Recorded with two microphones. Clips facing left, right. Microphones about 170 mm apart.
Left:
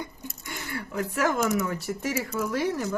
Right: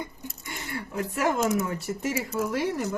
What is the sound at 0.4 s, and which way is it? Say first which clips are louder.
Speech: even; 20° right (ahead or behind).